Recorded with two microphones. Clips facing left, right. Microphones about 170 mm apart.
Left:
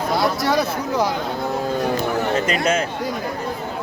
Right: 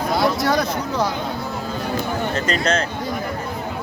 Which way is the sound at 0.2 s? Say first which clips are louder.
Right 1 dB; centre (ahead or behind).